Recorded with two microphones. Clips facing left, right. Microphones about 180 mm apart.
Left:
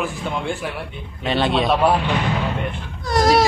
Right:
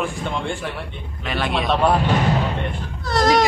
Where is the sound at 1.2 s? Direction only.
25° left (ahead or behind).